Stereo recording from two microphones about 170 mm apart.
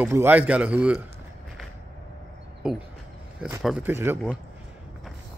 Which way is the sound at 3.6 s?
5° right (ahead or behind).